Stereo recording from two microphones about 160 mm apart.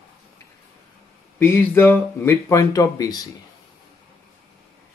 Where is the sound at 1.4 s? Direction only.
15° left (ahead or behind).